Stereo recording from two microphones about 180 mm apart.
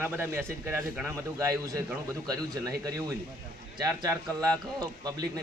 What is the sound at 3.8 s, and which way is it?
A man's voice, 20° right (ahead or behind).